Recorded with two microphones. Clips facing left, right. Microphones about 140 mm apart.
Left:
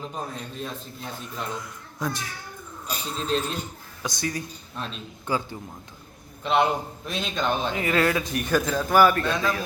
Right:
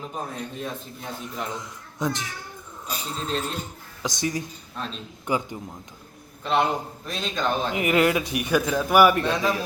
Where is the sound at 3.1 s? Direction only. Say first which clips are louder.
Left 2 dB; centre (ahead or behind).